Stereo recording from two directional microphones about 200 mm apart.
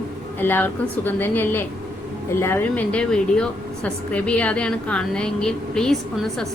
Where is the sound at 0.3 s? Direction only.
10° left (ahead or behind).